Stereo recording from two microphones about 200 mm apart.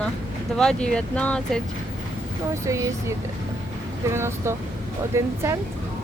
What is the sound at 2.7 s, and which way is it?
Speech, 15° right (ahead or behind).